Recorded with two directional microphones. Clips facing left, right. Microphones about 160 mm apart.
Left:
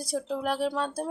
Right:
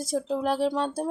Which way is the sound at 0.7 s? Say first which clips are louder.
Right 3 dB; 30° right (ahead or behind).